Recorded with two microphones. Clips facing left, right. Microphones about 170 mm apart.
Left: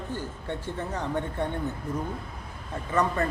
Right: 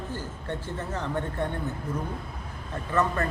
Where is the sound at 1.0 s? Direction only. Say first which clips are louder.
Even; 15° left (ahead or behind).